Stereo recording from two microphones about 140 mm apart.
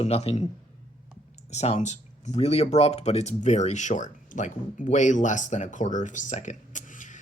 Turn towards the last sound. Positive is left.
turn(degrees=65)  # may be behind; listen again after turning